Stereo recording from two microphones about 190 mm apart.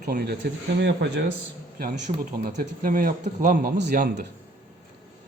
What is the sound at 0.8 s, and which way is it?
Speech, 65° right (ahead or behind).